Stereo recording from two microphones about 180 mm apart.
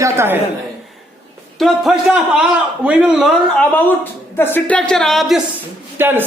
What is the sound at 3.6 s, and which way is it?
A woman's voice, 10° left (ahead or behind).